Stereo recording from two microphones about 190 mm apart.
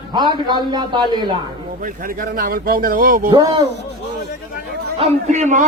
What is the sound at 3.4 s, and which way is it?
Speech, 20° right (ahead or behind).